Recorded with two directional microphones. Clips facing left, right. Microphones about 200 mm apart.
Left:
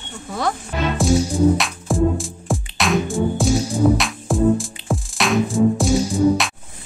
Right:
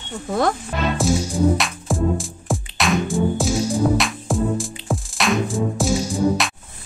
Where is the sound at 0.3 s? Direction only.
50° right (ahead or behind).